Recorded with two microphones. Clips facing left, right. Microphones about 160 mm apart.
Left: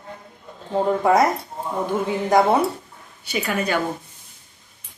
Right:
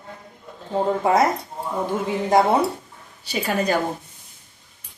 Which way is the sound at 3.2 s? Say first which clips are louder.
Right 1 dB; 35° right (ahead or behind).